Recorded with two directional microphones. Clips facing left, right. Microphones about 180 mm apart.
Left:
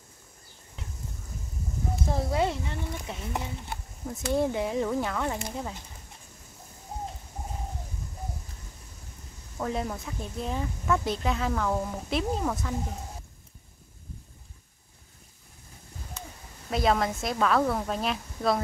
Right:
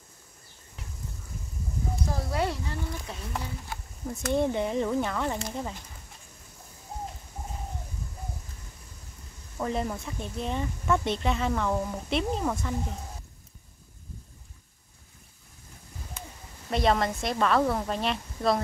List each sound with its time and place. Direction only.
2.0 s speech: 25° left (ahead or behind)
4.1 s speech: centre (ahead or behind)
9.6 s speech: centre (ahead or behind)
16.7 s speech: centre (ahead or behind)